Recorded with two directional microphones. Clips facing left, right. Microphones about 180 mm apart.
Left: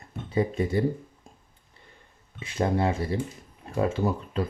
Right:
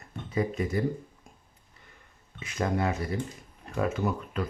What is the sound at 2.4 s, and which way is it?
Speech, 30° left (ahead or behind).